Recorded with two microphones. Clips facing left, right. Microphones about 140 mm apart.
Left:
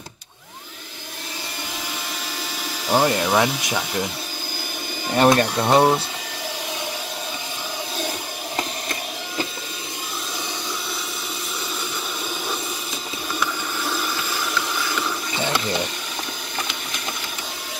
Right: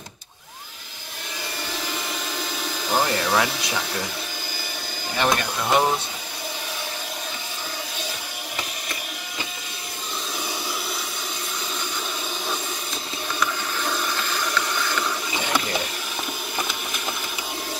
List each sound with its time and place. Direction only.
2.9 s speech: 10° left (ahead or behind)
5.1 s speech: 45° left (ahead or behind)
5.6 s speech: 30° left (ahead or behind)
13.4 s a sound: 5° left (ahead or behind)